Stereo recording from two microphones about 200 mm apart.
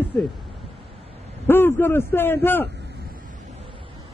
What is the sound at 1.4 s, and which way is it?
A man's voice, 10° left (ahead or behind).